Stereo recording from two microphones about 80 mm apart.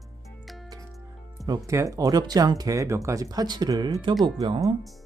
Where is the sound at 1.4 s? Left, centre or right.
Right.